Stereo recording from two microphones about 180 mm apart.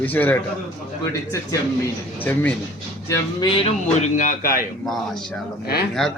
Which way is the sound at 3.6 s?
45° left (ahead or behind).